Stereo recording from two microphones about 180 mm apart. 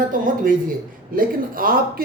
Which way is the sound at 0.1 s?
50° right (ahead or behind).